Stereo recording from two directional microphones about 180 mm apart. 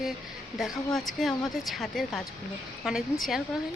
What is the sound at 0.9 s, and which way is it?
Speech, centre (ahead or behind).